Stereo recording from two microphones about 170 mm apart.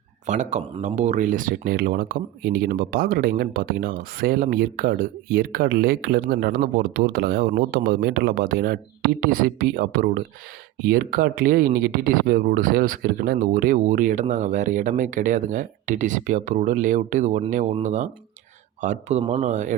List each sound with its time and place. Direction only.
0.3 s speech: 45° right (ahead or behind)